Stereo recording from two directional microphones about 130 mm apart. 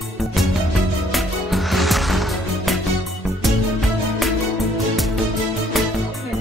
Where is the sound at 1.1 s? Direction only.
Centre (ahead or behind).